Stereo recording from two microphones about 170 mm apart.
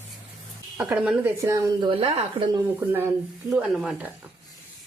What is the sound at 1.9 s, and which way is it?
Speech, 35° right (ahead or behind).